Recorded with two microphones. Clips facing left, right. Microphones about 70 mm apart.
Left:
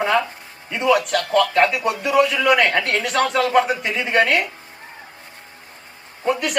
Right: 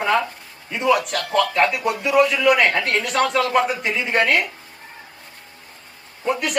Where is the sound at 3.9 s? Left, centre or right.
Left.